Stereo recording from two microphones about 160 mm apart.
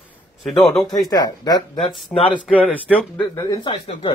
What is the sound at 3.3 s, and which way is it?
Speech, 20° left (ahead or behind).